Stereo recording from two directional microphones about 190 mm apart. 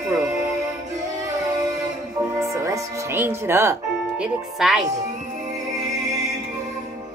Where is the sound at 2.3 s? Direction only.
15° right (ahead or behind).